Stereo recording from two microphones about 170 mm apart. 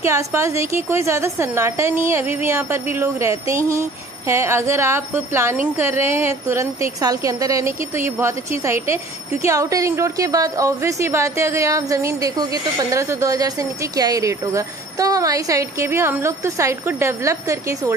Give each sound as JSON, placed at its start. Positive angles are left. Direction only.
{"t": 0.0, "sound": "speech", "side_deg": -15}